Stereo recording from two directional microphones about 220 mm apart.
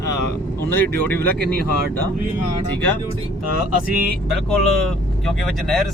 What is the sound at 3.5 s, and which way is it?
Speech, 40° right (ahead or behind).